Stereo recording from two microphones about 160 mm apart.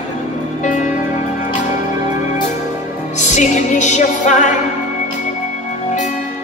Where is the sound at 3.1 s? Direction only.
45° left (ahead or behind).